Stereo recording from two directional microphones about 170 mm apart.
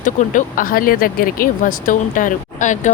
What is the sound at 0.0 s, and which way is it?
Speech, 50° left (ahead or behind).